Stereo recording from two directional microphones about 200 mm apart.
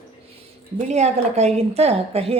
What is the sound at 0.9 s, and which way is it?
A woman's voice, 35° right (ahead or behind).